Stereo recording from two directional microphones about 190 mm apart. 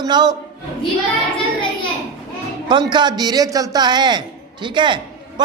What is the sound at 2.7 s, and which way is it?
A man's voice, 25° right (ahead or behind).